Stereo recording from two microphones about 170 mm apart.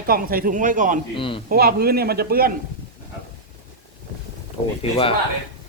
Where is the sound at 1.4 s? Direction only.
65° right (ahead or behind).